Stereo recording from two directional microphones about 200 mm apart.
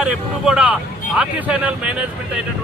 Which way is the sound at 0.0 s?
5° right (ahead or behind).